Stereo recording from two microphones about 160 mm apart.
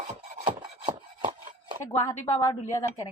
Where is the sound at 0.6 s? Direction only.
30° right (ahead or behind).